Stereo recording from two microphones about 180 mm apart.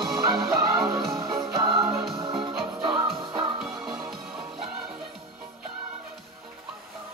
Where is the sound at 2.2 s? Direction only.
25° right (ahead or behind).